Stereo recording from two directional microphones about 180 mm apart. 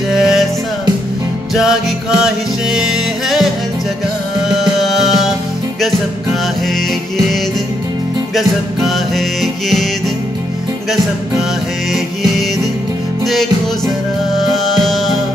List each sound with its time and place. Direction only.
0.1 s music: centre (ahead or behind)
1.5 s music: 5° right (ahead or behind)
4.6 s music: centre (ahead or behind)
8.4 s music: centre (ahead or behind)
14.3 s music: centre (ahead or behind)